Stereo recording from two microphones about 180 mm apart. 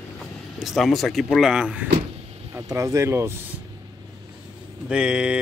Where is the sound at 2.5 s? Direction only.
15° right (ahead or behind).